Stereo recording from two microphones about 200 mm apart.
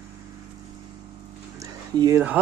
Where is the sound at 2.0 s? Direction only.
10° right (ahead or behind).